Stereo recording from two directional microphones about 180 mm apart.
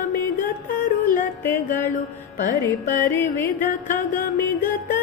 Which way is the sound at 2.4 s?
45° left (ahead or behind).